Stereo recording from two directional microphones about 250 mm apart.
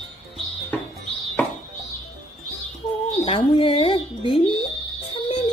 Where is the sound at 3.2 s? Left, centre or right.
Left.